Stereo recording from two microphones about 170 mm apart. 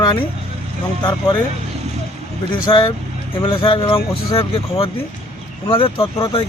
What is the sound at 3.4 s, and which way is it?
Speech, 30° left (ahead or behind).